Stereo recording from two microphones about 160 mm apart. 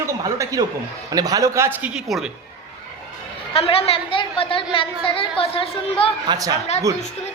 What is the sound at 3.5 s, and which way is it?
A woman's voice, 35° left (ahead or behind).